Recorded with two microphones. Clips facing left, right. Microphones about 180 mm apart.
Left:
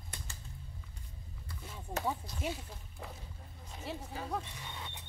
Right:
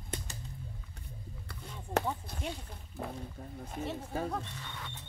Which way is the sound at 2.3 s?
55° right (ahead or behind).